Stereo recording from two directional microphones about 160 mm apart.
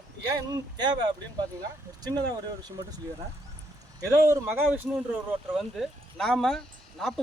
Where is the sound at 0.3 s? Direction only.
25° right (ahead or behind).